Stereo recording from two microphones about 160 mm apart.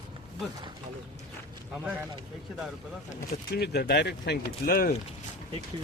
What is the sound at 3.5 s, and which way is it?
Speech, 90° left.